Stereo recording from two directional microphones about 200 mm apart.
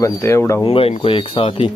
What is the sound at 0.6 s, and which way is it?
Speech, 30° left (ahead or behind).